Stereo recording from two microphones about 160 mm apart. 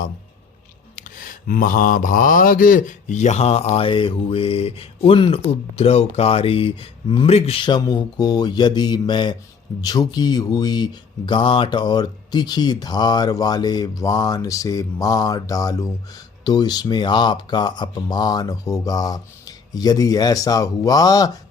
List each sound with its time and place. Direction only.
0.9 s mantra: 60° left (ahead or behind); by 9.3 s 30° left (ahead or behind)
9.8 s speech: 25° left (ahead or behind)